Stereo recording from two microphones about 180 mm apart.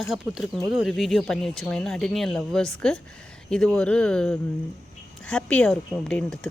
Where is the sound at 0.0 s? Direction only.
Centre (ahead or behind).